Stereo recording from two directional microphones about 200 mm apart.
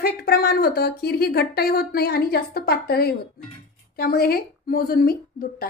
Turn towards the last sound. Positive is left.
turn(degrees=50)  # may be behind; listen again after turning